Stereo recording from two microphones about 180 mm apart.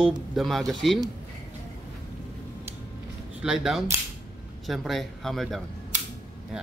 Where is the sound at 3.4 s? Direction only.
5° right (ahead or behind).